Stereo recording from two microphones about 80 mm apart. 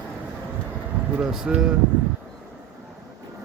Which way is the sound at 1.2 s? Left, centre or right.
Centre.